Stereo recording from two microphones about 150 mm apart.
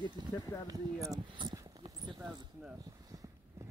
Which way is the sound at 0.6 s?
25° right (ahead or behind).